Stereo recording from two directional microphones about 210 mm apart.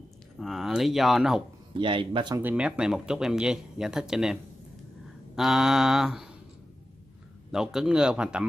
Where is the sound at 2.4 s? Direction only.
5° right (ahead or behind).